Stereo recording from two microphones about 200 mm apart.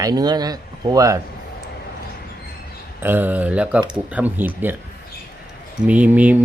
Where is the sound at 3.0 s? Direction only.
10° right (ahead or behind).